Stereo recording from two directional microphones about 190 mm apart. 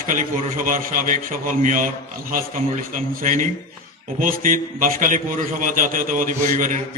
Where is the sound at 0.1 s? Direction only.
45° right (ahead or behind).